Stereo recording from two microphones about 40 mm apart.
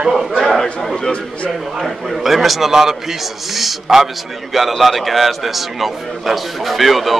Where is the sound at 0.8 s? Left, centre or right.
Centre.